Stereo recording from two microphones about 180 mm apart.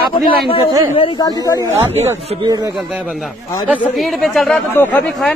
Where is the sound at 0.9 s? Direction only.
25° left (ahead or behind).